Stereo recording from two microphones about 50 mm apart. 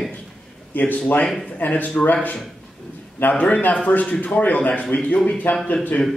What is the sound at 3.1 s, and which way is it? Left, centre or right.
A man's voice, left.